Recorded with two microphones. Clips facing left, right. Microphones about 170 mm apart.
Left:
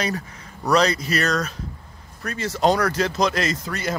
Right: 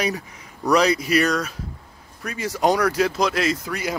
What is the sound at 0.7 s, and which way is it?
Speech, 10° right (ahead or behind).